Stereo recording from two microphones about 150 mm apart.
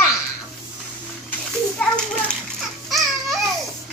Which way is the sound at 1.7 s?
5° left (ahead or behind).